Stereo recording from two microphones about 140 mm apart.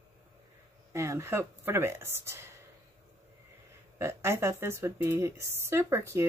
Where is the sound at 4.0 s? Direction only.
20° right (ahead or behind).